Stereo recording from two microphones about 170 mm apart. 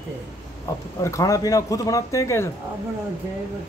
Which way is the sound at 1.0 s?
20° left (ahead or behind).